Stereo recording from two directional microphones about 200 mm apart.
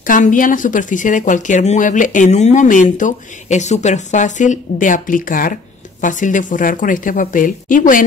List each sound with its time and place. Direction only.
0.0 s speech: 40° left (ahead or behind)